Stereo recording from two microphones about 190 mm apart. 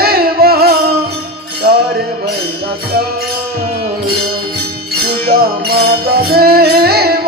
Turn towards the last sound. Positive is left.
turn(degrees=-55)  # may be behind; listen again after turning